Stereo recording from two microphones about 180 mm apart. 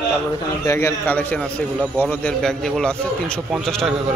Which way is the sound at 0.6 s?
15° left (ahead or behind).